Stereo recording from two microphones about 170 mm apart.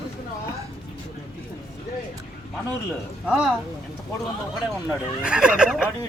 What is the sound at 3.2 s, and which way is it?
Speech, 5° right (ahead or behind).